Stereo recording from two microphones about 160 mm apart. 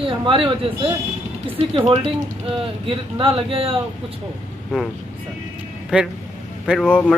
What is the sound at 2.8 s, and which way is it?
Speech, 35° right (ahead or behind).